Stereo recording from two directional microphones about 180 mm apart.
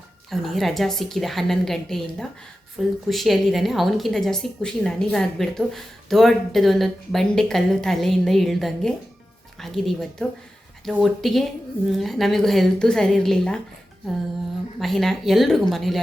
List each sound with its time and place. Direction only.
0.3 s a woman's voice: centre (ahead or behind)
14.8 s a woman's voice: centre (ahead or behind)